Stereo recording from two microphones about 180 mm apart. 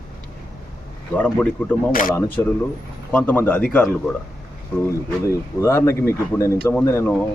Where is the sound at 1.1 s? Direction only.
10° left (ahead or behind).